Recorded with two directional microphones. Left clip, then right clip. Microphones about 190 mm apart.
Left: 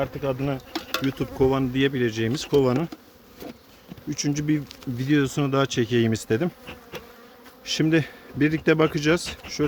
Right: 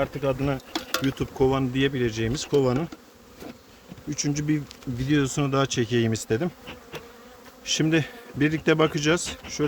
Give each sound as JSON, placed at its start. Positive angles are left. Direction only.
{"t": 0.0, "sound": "speech", "side_deg": 5}
{"t": 1.1, "sound": "speech", "side_deg": 25}
{"t": 4.1, "sound": "speech", "side_deg": 35}
{"t": 7.6, "sound": "speech", "side_deg": 20}
{"t": 9.6, "sound": "speech", "side_deg": 30}